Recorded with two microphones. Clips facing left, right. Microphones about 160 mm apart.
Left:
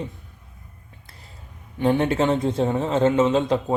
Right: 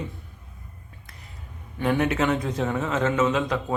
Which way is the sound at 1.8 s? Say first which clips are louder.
Left 3 dB; 30° left (ahead or behind).